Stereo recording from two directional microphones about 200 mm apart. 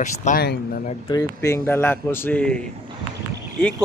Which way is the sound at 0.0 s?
40° left (ahead or behind).